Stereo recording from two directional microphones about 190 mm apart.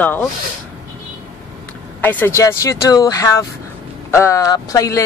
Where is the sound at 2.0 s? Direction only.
10° left (ahead or behind).